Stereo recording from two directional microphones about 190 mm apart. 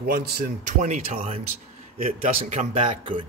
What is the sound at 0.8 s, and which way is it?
A man's voice, 40° right (ahead or behind).